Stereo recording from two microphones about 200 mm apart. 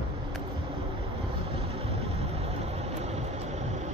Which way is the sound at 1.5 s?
30° right (ahead or behind).